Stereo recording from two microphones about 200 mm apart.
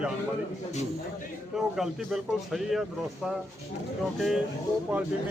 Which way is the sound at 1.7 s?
Centre (ahead or behind).